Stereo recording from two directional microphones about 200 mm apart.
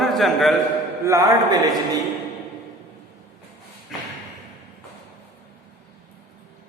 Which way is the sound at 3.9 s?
Centre (ahead or behind).